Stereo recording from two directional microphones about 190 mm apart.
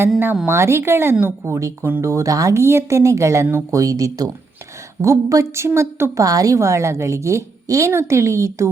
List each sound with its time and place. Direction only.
0.1 s speech: 5° right (ahead or behind)